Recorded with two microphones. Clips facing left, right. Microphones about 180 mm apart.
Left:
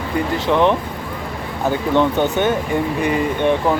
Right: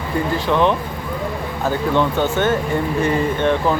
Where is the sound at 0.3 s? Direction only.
20° left (ahead or behind).